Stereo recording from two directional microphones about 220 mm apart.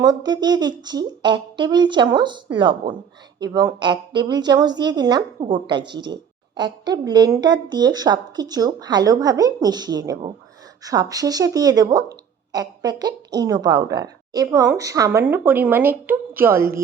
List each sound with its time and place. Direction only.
0.0 s speech: 20° right (ahead or behind)